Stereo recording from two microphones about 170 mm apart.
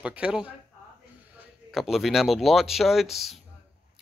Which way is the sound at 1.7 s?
Centre (ahead or behind).